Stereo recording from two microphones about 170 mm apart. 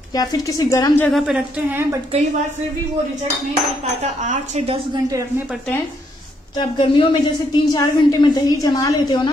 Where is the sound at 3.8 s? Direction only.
45° right (ahead or behind).